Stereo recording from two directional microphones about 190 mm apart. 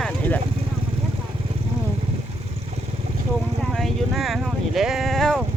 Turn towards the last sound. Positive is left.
turn(degrees=0)  # may be behind; listen again after turning